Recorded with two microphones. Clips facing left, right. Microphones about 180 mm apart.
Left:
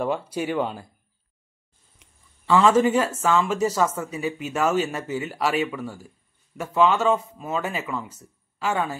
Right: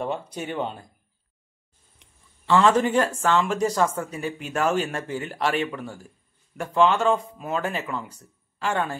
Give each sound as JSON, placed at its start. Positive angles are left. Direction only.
{"t": 0.1, "sound": "speech", "side_deg": 5}
{"t": 2.0, "sound": "a sound", "side_deg": 5}
{"t": 3.2, "sound": "speech", "side_deg": 10}